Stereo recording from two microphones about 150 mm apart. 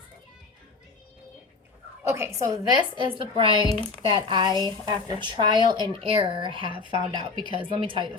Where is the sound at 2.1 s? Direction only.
20° right (ahead or behind).